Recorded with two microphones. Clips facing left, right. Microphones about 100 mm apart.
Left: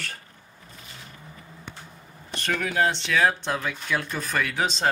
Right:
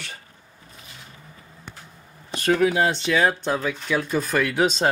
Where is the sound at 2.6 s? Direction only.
10° right (ahead or behind).